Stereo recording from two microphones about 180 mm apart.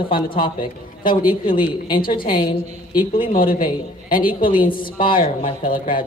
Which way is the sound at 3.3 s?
50° left (ahead or behind).